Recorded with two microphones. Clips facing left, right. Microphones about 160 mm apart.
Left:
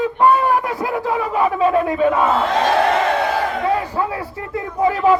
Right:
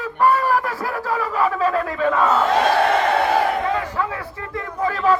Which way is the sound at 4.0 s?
25° left (ahead or behind).